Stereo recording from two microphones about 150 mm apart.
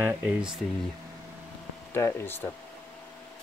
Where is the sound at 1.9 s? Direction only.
15° left (ahead or behind).